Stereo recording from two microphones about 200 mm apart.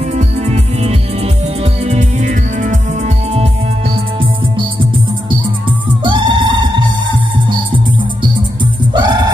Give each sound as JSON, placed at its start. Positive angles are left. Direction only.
{"t": 1.6, "sound": "music", "side_deg": -35}
{"t": 6.0, "sound": "music", "side_deg": -25}
{"t": 8.9, "sound": "music", "side_deg": -20}